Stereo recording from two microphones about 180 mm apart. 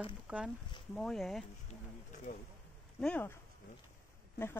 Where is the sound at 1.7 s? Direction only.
40° left (ahead or behind).